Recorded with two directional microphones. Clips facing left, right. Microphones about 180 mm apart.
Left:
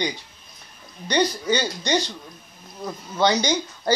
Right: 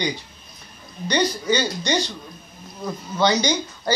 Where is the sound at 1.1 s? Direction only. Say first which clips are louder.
Even; 50° left (ahead or behind).